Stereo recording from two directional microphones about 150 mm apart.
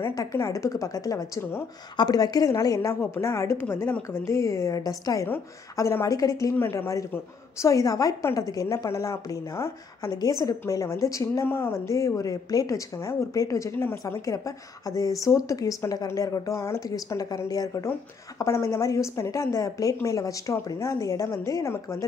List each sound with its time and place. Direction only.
0.0 s a woman's voice: 20° left (ahead or behind)